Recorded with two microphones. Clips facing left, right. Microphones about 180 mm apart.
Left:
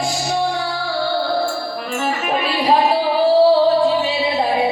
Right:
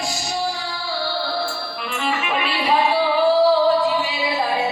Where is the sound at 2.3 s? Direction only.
40° left (ahead or behind).